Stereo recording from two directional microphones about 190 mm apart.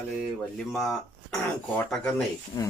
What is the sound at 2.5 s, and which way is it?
Speech, 20° left (ahead or behind).